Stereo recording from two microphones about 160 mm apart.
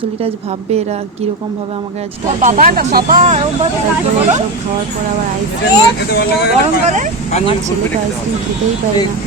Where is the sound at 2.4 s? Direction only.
55° right (ahead or behind).